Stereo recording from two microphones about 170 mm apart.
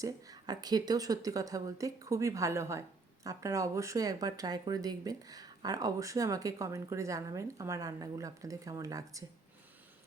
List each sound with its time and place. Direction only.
0.0 s speech: 20° right (ahead or behind)